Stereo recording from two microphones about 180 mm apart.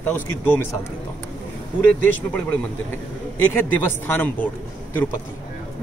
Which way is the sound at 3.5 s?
10° left (ahead or behind).